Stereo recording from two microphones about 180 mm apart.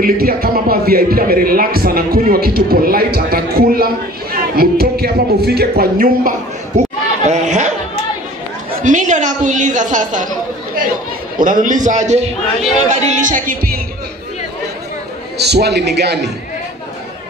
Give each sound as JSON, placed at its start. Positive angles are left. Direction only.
{"t": 0.0, "sound": "a man's voice", "side_deg": -55}
{"t": 6.7, "sound": "chatter", "side_deg": -45}
{"t": 7.2, "sound": "speech", "side_deg": -40}
{"t": 8.7, "sound": "a woman's voice", "side_deg": -45}
{"t": 11.3, "sound": "a woman's voice", "side_deg": -50}
{"t": 15.3, "sound": "a man's voice", "side_deg": -65}